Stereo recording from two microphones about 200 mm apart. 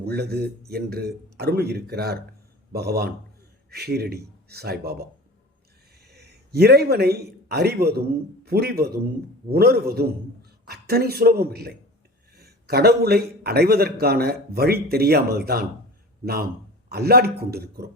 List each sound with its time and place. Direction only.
0.0 s a man's voice: 55° right (ahead or behind)
6.1 s a man's voice: 55° right (ahead or behind)